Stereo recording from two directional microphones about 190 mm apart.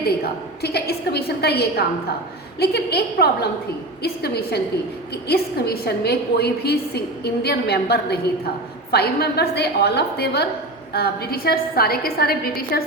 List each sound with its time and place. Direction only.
0.2 s a woman's voice: 55° left (ahead or behind)